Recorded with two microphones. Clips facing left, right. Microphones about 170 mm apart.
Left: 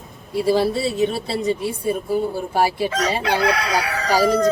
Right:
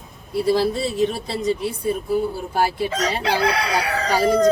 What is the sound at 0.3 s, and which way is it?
Speech, centre (ahead or behind).